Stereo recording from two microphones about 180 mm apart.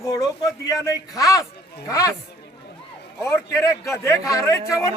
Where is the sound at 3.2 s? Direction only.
15° left (ahead or behind).